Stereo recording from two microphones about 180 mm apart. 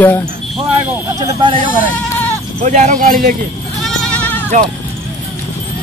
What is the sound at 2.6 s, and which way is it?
Speech, 45° right (ahead or behind).